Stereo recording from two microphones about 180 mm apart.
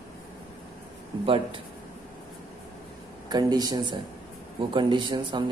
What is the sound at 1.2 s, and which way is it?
Speech, 30° right (ahead or behind).